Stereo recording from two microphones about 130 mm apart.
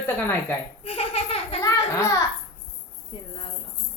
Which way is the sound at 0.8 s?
50° left (ahead or behind).